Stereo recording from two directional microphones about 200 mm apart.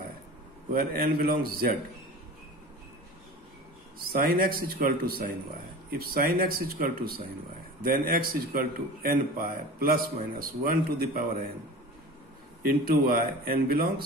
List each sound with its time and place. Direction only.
0.7 s a man's voice: 45° right (ahead or behind)
4.1 s a man's voice: 45° right (ahead or behind)
12.8 s a man's voice: 45° right (ahead or behind)